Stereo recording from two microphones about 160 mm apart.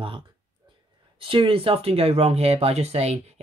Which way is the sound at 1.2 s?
35° right (ahead or behind).